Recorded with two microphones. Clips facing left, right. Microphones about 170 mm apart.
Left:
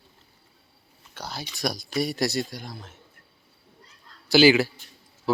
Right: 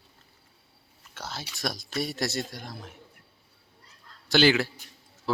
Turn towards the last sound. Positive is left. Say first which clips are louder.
# left 5 dB
turn(degrees=5)  # may be behind; listen again after turning